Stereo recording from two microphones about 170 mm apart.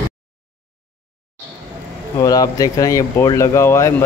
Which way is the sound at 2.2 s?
20° left (ahead or behind).